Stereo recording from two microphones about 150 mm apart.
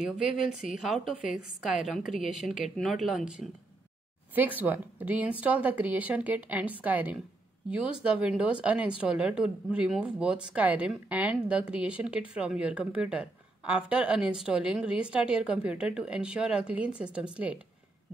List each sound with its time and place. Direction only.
0.0 s a woman's voice: centre (ahead or behind)